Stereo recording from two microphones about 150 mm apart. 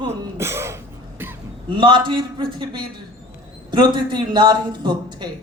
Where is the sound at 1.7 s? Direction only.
30° right (ahead or behind).